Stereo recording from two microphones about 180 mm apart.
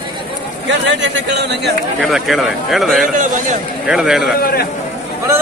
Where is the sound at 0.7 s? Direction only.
85° right.